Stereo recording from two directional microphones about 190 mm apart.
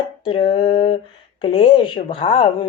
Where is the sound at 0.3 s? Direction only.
30° left (ahead or behind).